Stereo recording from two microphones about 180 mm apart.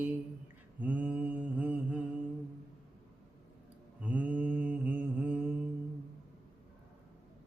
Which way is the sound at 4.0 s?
10° right (ahead or behind).